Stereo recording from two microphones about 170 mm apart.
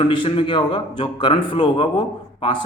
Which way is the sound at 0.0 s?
30° left (ahead or behind).